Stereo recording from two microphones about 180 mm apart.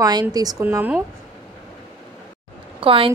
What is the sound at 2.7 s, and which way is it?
Speech, 30° right (ahead or behind).